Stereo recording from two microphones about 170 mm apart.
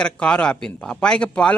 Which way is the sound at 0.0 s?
5° left (ahead or behind).